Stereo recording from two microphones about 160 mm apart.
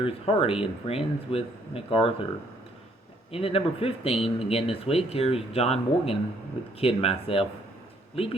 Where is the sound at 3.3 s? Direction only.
35° left (ahead or behind).